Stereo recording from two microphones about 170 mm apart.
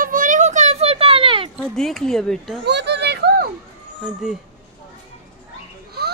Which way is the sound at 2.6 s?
85° right.